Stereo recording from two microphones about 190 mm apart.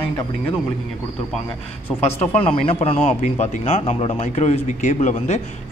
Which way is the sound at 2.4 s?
30° left (ahead or behind).